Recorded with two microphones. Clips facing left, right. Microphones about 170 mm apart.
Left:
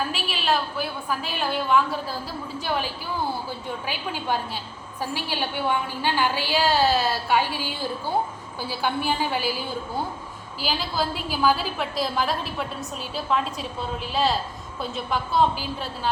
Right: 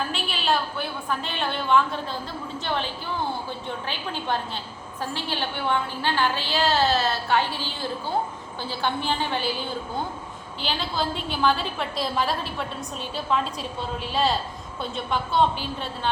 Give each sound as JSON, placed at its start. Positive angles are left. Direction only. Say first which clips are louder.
{"t": 0.1, "sound": "a woman's voice", "louder": "even", "side_deg": 5}